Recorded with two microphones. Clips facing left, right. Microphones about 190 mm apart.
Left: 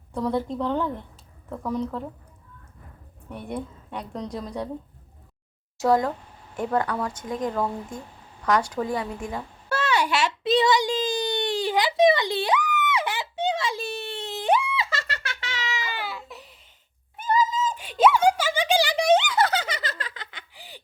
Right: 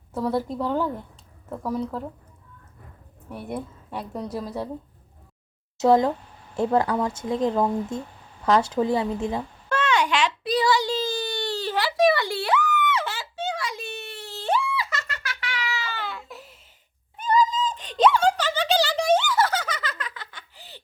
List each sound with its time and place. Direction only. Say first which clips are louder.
0.1 s a woman's voice: even; 5° right (ahead or behind)
3.2 s a woman's voice: even; 5° right (ahead or behind)
5.7 s speech: right 3 dB; 20° right (ahead or behind)
9.6 s babbling: right 1 dB; 10° left (ahead or behind)
10.4 s a sound: left 4 dB; 25° left (ahead or behind)
19.8 s giggle: even; 30° left (ahead or behind)
20.3 s laughter: left 1 dB; 10° left (ahead or behind)